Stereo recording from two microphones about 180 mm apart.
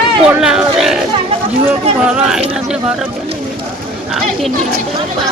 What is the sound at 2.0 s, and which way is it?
Speech, 5° right (ahead or behind).